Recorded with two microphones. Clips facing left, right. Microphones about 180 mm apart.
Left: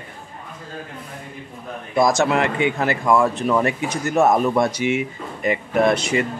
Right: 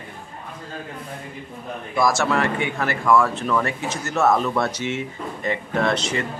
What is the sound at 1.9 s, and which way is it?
Speech, 20° left (ahead or behind).